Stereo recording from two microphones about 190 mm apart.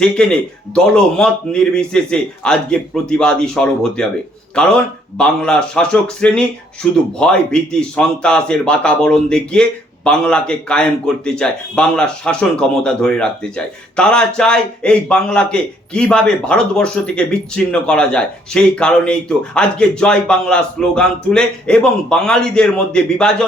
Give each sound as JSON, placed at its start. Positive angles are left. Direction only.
{"t": 0.0, "sound": "a man's voice", "side_deg": 5}